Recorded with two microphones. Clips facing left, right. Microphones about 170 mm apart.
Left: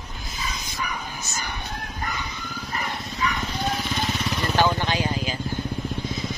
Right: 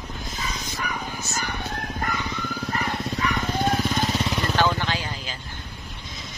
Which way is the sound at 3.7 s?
50° right (ahead or behind).